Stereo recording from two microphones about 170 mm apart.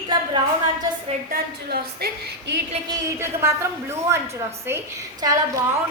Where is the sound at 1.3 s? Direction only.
65° right (ahead or behind).